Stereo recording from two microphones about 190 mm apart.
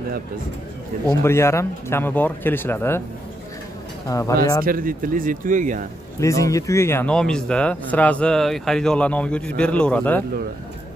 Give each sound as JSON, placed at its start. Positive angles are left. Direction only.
{"t": 1.0, "sound": "speech", "side_deg": 15}
{"t": 4.1, "sound": "speech", "side_deg": 15}
{"t": 4.6, "sound": "speech", "side_deg": -50}
{"t": 6.2, "sound": "speech", "side_deg": 15}